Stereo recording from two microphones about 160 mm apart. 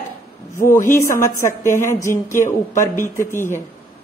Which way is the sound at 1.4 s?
55° left (ahead or behind).